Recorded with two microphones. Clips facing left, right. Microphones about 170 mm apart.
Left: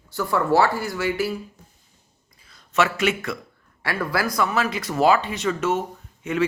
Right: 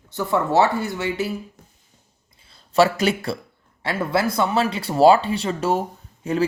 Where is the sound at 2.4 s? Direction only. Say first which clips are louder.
Right 5 dB; 30° right (ahead or behind).